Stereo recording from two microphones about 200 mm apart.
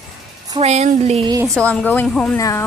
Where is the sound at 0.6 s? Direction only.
30° right (ahead or behind).